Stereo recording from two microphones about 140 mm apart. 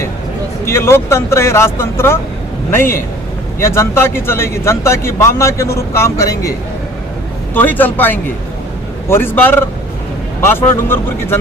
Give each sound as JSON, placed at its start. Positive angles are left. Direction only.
{"t": 0.6, "sound": "a man's voice", "side_deg": 20}
{"t": 7.5, "sound": "speech", "side_deg": 15}